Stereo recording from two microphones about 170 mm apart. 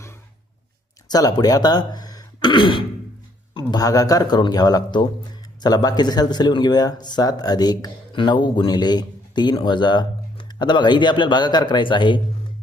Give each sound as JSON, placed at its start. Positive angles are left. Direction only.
{"t": 1.1, "sound": "speech", "side_deg": 20}